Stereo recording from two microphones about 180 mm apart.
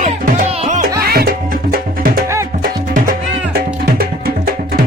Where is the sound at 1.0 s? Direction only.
60° right (ahead or behind).